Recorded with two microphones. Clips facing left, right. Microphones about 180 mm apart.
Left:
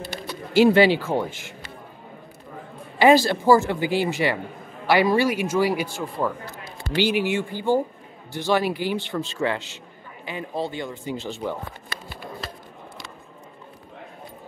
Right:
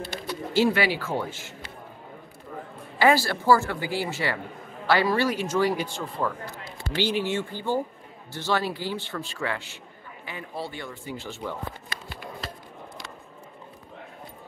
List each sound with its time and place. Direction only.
0.5 s speech: 15° left (ahead or behind)
3.0 s speech: 20° left (ahead or behind)